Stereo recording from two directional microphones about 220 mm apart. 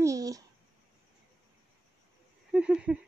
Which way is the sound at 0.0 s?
15° right (ahead or behind).